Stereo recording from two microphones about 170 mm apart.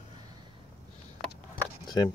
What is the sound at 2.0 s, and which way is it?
Speech, 25° left (ahead or behind).